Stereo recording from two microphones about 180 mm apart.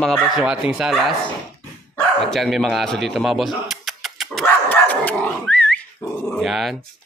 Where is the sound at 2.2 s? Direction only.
Centre (ahead or behind).